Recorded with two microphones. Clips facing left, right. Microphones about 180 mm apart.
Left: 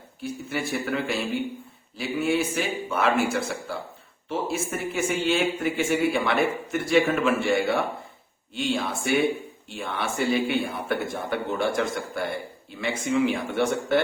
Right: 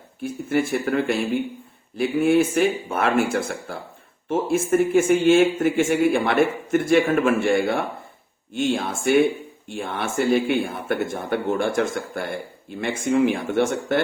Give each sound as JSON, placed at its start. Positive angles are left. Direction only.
{"t": 0.2, "sound": "speech", "side_deg": -50}